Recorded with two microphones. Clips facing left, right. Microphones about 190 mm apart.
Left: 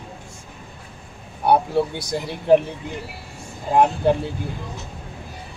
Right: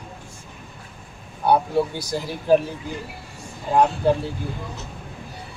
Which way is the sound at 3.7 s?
20° left (ahead or behind).